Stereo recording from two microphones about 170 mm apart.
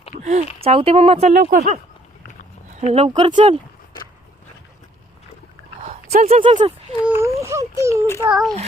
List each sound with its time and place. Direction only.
0.2 s speech: 45° right (ahead or behind)
0.6 s speech: 35° right (ahead or behind)
2.6 s a sound: 40° right (ahead or behind)
3.2 s speech: 30° right (ahead or behind)
6.2 s speech: 40° right (ahead or behind)
7.2 s speech: 15° right (ahead or behind)
8.2 s a child's voice: 5° right (ahead or behind)